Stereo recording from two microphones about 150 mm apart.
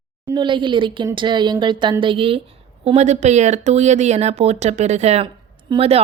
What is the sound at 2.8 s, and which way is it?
Speech, 50° right (ahead or behind).